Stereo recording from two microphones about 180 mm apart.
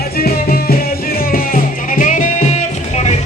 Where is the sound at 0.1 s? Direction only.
55° left (ahead or behind).